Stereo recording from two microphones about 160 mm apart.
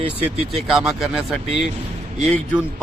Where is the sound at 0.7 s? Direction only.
5° right (ahead or behind).